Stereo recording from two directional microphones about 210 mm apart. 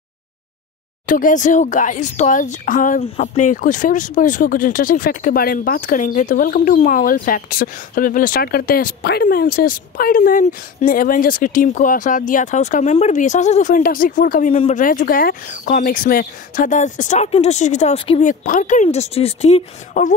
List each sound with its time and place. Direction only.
1.0 s speech: 40° left (ahead or behind)